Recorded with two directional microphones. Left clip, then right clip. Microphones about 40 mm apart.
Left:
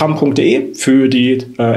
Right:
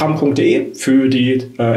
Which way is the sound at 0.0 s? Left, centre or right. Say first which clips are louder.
Left 2 dB; left.